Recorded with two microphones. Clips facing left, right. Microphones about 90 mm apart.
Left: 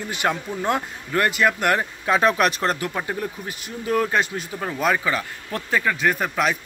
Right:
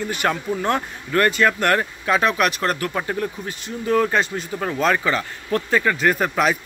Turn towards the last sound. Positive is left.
turn(degrees=0)  # may be behind; listen again after turning